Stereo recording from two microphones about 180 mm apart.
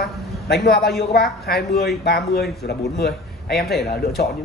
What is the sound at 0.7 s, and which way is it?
A man's voice, 60° left (ahead or behind).